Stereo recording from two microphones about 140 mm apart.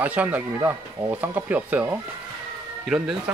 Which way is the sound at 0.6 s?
20° right (ahead or behind).